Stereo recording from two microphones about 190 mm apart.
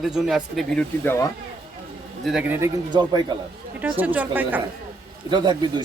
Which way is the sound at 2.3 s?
5° right (ahead or behind).